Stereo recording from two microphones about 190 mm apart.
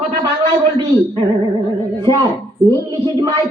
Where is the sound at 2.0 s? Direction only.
20° right (ahead or behind).